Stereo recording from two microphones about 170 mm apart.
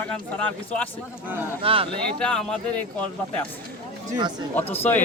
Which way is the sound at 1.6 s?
35° right (ahead or behind).